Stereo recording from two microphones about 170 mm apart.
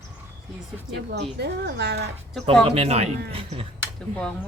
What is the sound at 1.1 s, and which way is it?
Speech, 75° right (ahead or behind).